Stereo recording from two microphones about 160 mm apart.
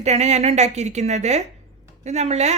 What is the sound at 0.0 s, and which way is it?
Speech, 45° right (ahead or behind).